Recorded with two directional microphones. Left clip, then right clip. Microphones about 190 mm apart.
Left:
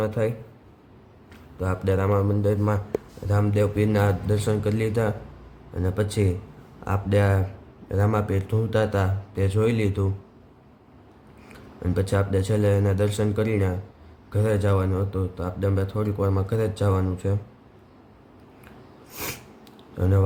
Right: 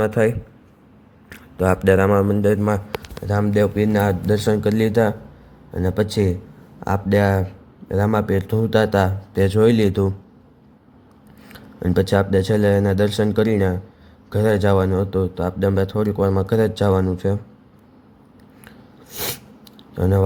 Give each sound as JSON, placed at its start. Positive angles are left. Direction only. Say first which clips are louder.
{"t": 0.0, "sound": "a man's voice", "louder": "right 7 dB", "side_deg": -25}
{"t": 1.3, "sound": "a man's voice", "louder": "right 11 dB", "side_deg": -30}
{"t": 11.5, "sound": "a man's voice", "louder": "right 8 dB", "side_deg": -30}
{"t": 19.1, "sound": "sneeze", "louder": "right 6 dB", "side_deg": -20}
{"t": 20.0, "sound": "a man's voice", "louder": "right 6 dB", "side_deg": -25}